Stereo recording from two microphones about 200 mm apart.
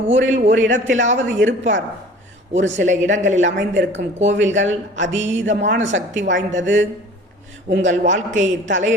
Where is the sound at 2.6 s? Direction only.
65° right (ahead or behind).